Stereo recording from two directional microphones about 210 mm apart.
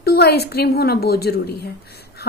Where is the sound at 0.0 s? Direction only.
50° left (ahead or behind).